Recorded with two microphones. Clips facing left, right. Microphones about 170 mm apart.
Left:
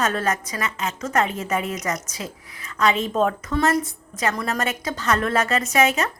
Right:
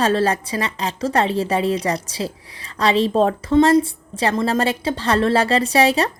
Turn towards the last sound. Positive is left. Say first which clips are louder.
# right 4 dB
turn(degrees=-35)  # may be behind; listen again after turning